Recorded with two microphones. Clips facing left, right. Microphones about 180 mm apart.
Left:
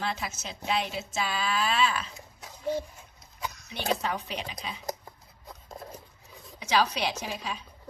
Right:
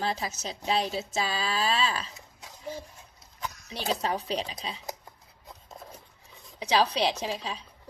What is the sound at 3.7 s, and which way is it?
A woman's voice, 35° right (ahead or behind).